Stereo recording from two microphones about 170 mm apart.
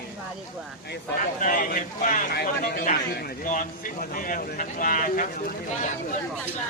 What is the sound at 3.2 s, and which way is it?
Speech, 55° left (ahead or behind).